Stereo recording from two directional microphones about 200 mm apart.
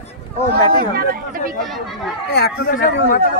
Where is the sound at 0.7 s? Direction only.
50° right (ahead or behind).